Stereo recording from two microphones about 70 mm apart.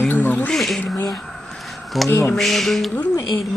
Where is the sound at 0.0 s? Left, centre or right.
Left.